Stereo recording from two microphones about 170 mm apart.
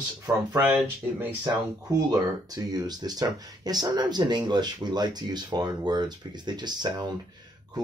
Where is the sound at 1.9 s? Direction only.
20° right (ahead or behind).